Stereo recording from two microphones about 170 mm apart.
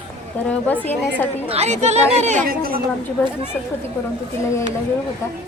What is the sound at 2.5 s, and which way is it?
Speech, 60° right (ahead or behind).